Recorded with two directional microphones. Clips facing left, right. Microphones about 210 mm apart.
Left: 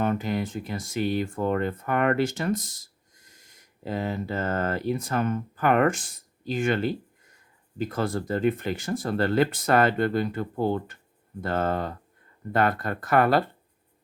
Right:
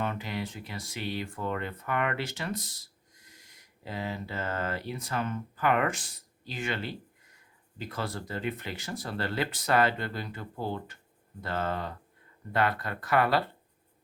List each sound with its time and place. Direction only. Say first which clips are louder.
0.0 s speech: left 7 dB; 45° left (ahead or behind)